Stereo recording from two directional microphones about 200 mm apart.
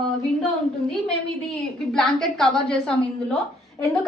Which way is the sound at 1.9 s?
5° left (ahead or behind).